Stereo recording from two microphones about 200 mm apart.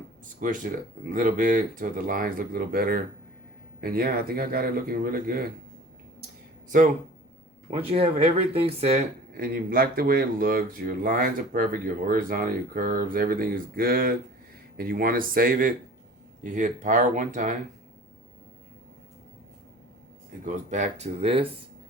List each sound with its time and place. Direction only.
0.4 s speech: 40° right (ahead or behind)
6.7 s speech: 40° right (ahead or behind)
7.7 s speech: 30° right (ahead or behind)
9.4 s speech: 45° right (ahead or behind)
20.4 s speech: 40° right (ahead or behind)